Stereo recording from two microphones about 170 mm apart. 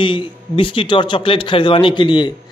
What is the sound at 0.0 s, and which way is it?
Speech, 30° left (ahead or behind).